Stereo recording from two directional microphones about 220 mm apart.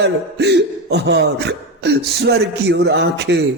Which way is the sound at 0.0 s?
50° right (ahead or behind).